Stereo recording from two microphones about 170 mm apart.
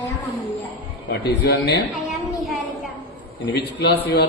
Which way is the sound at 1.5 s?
85° left.